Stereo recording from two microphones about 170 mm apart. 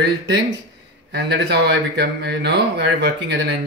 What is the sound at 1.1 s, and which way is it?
Speech, 80° right.